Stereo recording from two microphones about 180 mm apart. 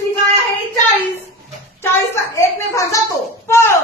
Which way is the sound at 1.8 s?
15° left (ahead or behind).